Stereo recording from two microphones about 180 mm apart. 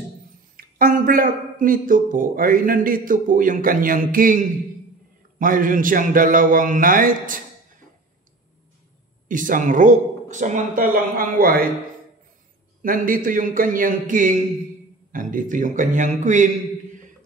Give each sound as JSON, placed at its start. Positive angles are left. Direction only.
{"t": 0.6, "sound": "speech", "side_deg": -50}
{"t": 9.3, "sound": "speech", "side_deg": -50}
{"t": 12.8, "sound": "speech", "side_deg": -50}